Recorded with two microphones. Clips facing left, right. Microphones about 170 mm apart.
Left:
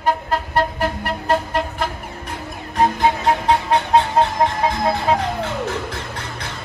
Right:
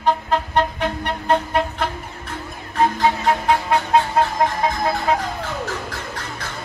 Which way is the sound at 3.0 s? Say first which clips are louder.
Left 1 dB; 20° left (ahead or behind).